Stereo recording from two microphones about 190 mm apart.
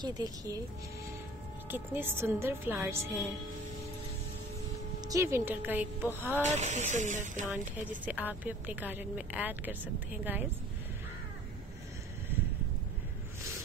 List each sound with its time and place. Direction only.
0.0 s speech: 20° right (ahead or behind)
1.7 s a woman's voice: 10° right (ahead or behind)
5.0 s a woman's voice: 15° right (ahead or behind)
6.4 s speech: 35° right (ahead or behind)
7.8 s a woman's voice: 10° right (ahead or behind)